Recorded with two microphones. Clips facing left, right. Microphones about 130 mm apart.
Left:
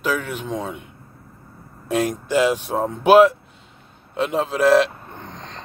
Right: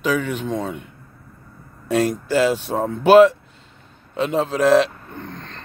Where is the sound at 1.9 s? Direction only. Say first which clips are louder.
Right 2 dB; 15° left (ahead or behind).